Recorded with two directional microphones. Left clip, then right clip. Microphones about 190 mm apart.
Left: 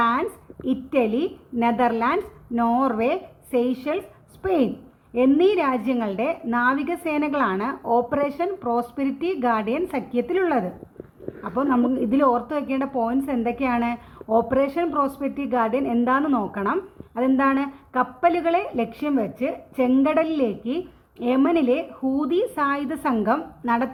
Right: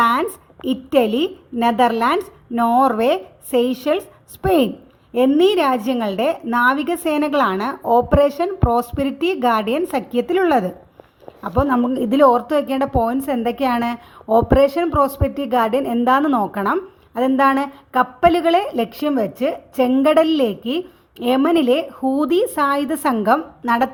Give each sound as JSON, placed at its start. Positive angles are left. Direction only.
{"t": 0.0, "sound": "a woman's voice", "side_deg": -45}